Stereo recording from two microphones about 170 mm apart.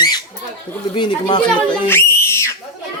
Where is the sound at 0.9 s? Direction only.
25° left (ahead or behind).